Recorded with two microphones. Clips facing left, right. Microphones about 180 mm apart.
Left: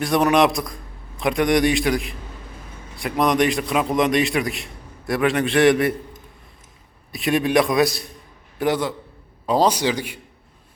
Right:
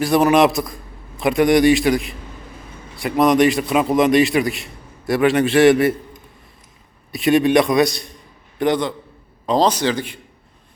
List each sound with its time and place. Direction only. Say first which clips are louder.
0.0 s a man's voice: right 3 dB; centre (ahead or behind)
7.1 s a man's voice: right 5 dB; centre (ahead or behind)